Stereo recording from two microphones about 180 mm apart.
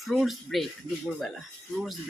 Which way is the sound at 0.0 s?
Centre (ahead or behind).